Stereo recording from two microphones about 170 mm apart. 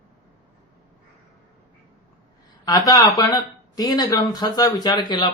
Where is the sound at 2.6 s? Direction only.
20° left (ahead or behind).